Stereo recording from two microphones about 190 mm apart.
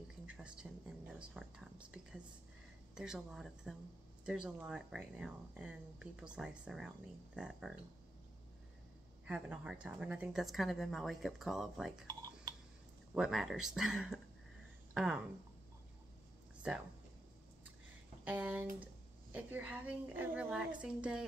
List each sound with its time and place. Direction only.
0.3 s a woman's voice: 5° right (ahead or behind)
9.2 s a woman's voice: 5° right (ahead or behind)
12.1 s a sound: 20° right (ahead or behind)
13.1 s a woman's voice: centre (ahead or behind)
18.2 s a woman's voice: 10° right (ahead or behind)